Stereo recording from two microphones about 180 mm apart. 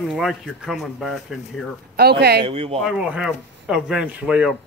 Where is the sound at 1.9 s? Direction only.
65° right (ahead or behind).